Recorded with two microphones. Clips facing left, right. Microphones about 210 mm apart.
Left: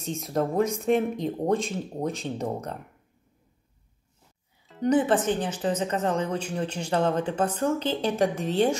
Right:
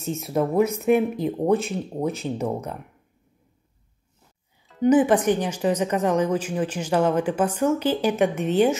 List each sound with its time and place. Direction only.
0.2 s speech: 5° right (ahead or behind)
4.8 s speech: 10° right (ahead or behind)
8.1 s a woman's voice: 30° left (ahead or behind)